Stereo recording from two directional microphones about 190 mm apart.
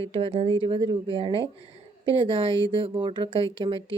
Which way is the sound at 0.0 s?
30° right (ahead or behind).